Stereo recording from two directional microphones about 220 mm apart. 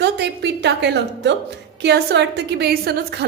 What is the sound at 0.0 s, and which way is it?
A woman's voice, 50° right (ahead or behind).